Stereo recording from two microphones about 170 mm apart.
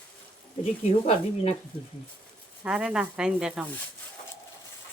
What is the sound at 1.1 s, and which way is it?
Speech, 35° left (ahead or behind).